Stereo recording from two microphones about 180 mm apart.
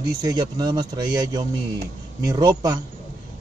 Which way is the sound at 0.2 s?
20° right (ahead or behind).